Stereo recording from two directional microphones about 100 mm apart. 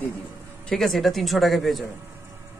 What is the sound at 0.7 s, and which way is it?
A man's voice, centre (ahead or behind).